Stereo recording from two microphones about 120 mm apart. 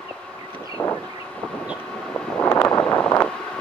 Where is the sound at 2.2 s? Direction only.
10° left (ahead or behind).